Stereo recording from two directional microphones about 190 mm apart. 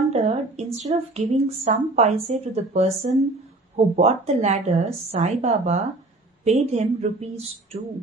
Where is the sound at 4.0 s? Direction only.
35° right (ahead or behind).